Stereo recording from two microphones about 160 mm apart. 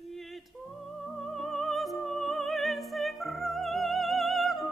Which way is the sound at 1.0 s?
Centre (ahead or behind).